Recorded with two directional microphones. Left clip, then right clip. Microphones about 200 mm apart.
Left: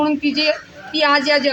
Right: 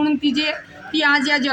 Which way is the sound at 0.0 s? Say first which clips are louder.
Left 2 dB; 5° right (ahead or behind).